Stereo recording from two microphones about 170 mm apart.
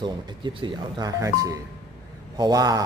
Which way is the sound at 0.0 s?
25° right (ahead or behind).